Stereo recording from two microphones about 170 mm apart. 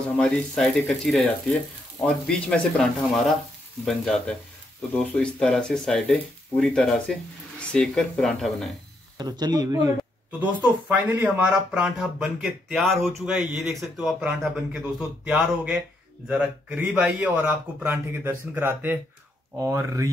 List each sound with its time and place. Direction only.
0.2 s a man's voice: centre (ahead or behind)
9.2 s a man's voice: 25° right (ahead or behind)